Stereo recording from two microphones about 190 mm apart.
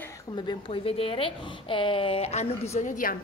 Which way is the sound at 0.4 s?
25° left (ahead or behind).